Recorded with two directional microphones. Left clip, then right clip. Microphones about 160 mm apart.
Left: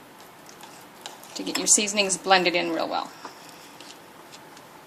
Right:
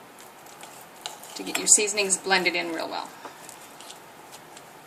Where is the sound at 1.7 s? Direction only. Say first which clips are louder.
Even; 40° left (ahead or behind).